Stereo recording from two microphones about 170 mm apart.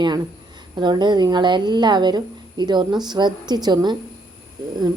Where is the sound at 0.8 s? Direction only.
25° right (ahead or behind).